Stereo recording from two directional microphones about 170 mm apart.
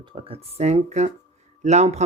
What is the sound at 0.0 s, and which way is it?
Speech, 30° right (ahead or behind).